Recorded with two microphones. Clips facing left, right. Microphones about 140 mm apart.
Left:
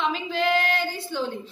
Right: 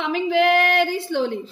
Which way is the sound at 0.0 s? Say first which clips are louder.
Right 6 dB; 65° right (ahead or behind).